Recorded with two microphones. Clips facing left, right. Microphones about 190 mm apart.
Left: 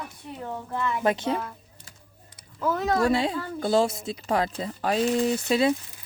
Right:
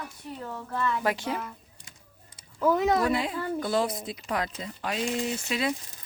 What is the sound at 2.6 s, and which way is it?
Speech, 15° right (ahead or behind).